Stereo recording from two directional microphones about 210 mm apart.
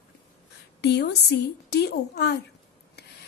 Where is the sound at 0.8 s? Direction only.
50° left (ahead or behind).